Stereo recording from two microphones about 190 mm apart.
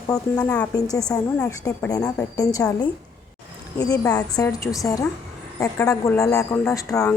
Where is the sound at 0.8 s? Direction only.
20° left (ahead or behind).